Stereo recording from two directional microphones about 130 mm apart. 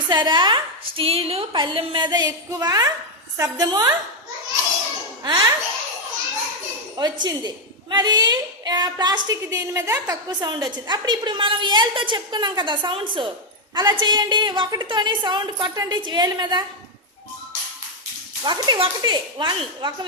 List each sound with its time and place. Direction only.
0.1 s a woman's voice: 35° right (ahead or behind)
5.2 s speech: 35° right (ahead or behind)
6.9 s a woman's voice: 30° right (ahead or behind)
18.4 s a woman's voice: 35° right (ahead or behind)